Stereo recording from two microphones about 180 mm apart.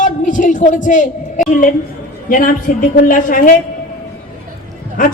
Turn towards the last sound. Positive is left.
turn(degrees=50)  # may be behind; listen again after turning